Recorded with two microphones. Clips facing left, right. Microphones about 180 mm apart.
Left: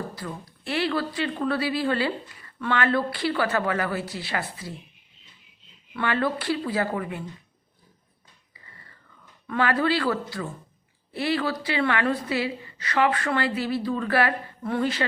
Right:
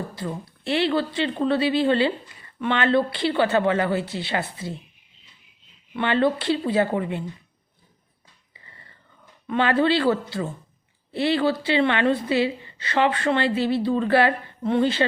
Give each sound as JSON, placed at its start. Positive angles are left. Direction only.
{"t": 0.2, "sound": "speech", "side_deg": -25}
{"t": 5.9, "sound": "speech", "side_deg": -25}
{"t": 9.5, "sound": "speech", "side_deg": -25}